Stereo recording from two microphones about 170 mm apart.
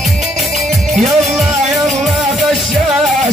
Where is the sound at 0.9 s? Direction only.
Centre (ahead or behind).